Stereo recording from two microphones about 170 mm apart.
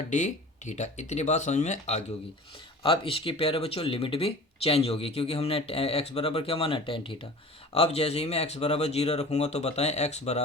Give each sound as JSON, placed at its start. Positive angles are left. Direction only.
{"t": 0.1, "sound": "speech", "side_deg": 45}